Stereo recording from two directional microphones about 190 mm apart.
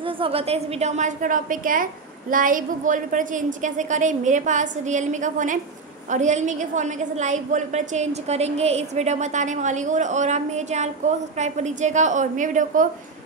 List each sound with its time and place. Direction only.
0.0 s a woman's voice: 30° right (ahead or behind)